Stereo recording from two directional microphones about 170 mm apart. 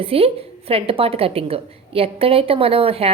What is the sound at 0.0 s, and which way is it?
A woman's voice, 35° right (ahead or behind).